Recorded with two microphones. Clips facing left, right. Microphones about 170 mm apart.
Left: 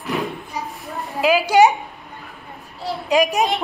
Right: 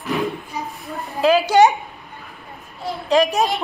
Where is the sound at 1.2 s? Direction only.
10° left (ahead or behind).